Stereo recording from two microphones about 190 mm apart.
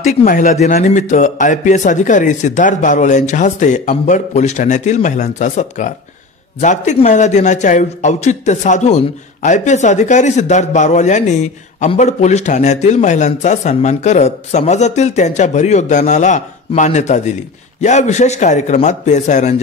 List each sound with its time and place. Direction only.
0.2 s a man's voice: 45° left (ahead or behind)